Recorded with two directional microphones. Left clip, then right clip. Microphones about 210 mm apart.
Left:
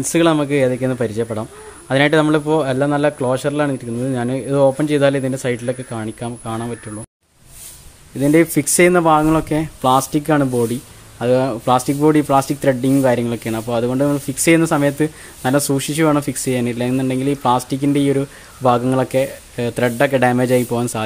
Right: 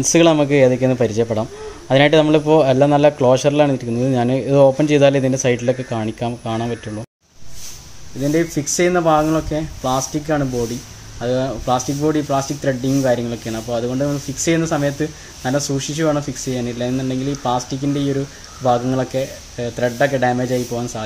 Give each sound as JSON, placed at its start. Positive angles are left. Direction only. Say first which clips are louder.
{"t": 0.1, "sound": "speech", "louder": "right 2 dB", "side_deg": 10}
{"t": 8.2, "sound": "speech", "louder": "left 5 dB", "side_deg": 40}